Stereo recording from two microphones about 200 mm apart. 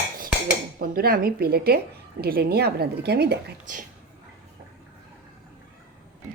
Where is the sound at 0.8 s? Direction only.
45° right (ahead or behind).